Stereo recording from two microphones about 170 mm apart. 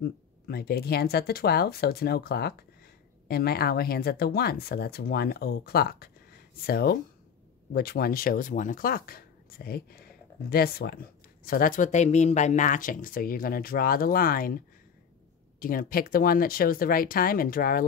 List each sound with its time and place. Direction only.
0.0 s speech: 65° left (ahead or behind)
15.6 s speech: 60° left (ahead or behind)